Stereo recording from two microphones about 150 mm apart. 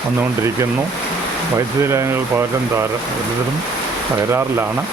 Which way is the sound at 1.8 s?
15° right (ahead or behind).